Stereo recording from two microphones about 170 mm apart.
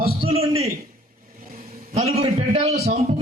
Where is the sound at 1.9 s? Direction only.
40° right (ahead or behind).